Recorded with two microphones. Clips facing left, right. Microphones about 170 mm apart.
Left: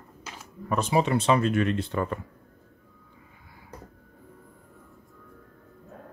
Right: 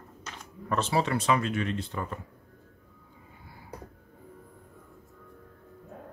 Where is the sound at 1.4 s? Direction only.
55° left (ahead or behind).